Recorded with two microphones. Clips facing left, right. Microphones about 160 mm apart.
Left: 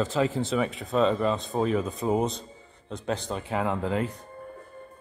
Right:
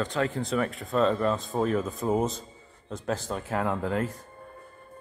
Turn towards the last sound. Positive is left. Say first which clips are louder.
# left 1 dB
turn(degrees=0)  # may be behind; listen again after turning